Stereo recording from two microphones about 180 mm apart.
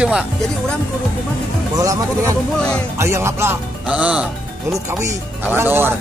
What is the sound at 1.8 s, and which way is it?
Speech, 20° right (ahead or behind).